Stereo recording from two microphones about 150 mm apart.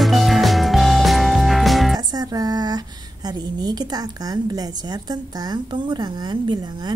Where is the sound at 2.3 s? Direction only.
25° right (ahead or behind).